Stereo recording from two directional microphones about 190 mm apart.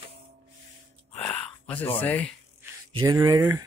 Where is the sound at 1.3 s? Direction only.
10° left (ahead or behind).